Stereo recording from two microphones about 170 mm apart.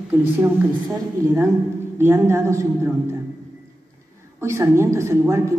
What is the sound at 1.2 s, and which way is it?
A woman's voice, 20° right (ahead or behind).